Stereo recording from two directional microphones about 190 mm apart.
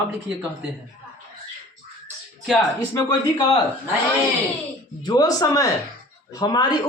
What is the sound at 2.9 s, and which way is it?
Speech, 20° left (ahead or behind).